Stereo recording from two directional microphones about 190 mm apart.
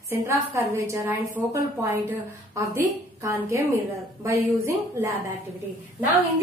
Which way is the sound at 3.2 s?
15° right (ahead or behind).